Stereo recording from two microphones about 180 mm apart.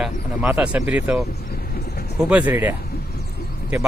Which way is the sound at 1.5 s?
60° left (ahead or behind).